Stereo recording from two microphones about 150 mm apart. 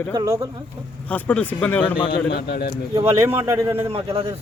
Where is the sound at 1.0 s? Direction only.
10° left (ahead or behind).